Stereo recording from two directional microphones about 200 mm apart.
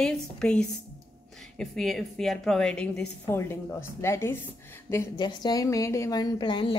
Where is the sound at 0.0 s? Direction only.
5° left (ahead or behind).